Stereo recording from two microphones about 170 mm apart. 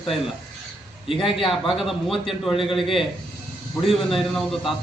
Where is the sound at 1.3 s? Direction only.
30° left (ahead or behind).